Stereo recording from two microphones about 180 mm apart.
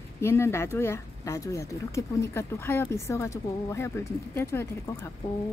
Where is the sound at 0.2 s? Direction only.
15° left (ahead or behind).